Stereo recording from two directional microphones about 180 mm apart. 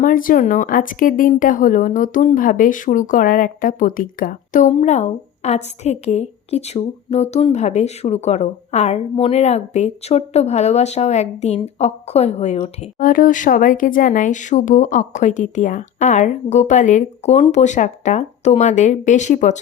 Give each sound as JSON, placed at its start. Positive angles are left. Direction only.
{"t": 0.0, "sound": "speech", "side_deg": 50}
{"t": 13.0, "sound": "speech", "side_deg": 50}